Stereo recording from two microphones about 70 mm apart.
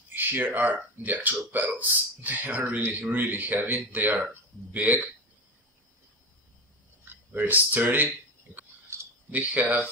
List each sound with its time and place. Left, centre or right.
0.1 s speech: right
7.1 s speech: right
8.9 s a sound: right
9.3 s speech: right